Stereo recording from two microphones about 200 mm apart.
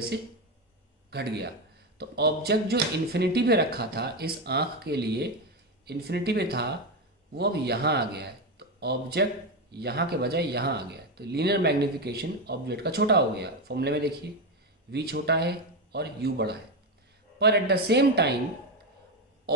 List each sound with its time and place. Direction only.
1.1 s speech: 55° right (ahead or behind)